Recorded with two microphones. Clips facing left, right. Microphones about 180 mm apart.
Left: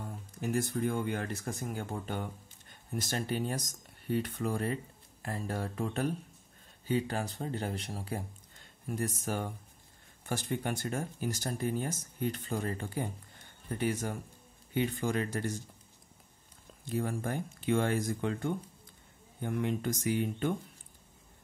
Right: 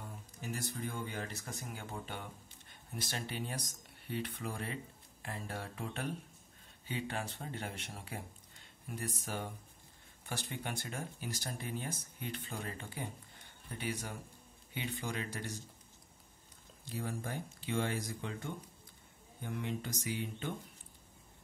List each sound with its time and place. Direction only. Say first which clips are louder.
0.4 s speech: left 10 dB; 55° left (ahead or behind)
16.8 s speech: left 7 dB; 55° left (ahead or behind)